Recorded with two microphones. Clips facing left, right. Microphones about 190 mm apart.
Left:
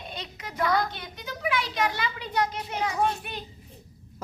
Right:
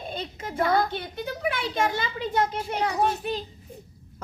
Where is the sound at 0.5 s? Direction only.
25° right (ahead or behind).